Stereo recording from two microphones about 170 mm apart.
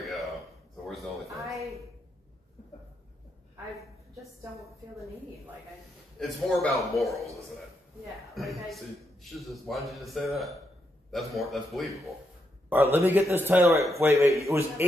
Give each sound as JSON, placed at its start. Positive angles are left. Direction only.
{"t": 0.0, "sound": "a sound", "side_deg": 0}
{"t": 1.2, "sound": "a woman's voice", "side_deg": -20}
{"t": 6.1, "sound": "a man's voice", "side_deg": 0}
{"t": 8.4, "sound": "a man's voice", "side_deg": 0}
{"t": 12.9, "sound": "a man's voice", "side_deg": -15}